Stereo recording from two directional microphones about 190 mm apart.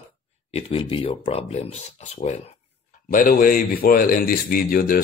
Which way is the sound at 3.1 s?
50° left (ahead or behind).